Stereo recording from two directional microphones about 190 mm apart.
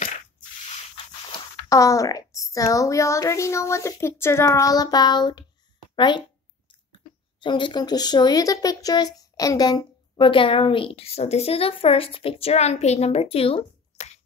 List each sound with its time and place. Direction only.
1.7 s a woman's voice: 15° left (ahead or behind)
7.3 s speech: 25° left (ahead or behind)